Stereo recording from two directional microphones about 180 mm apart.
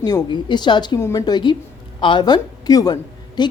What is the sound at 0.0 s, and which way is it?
Speech, 20° left (ahead or behind).